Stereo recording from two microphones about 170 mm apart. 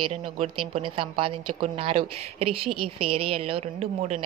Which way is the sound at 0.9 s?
30° right (ahead or behind).